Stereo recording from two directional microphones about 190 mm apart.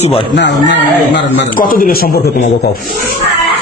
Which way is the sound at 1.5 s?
50° left (ahead or behind).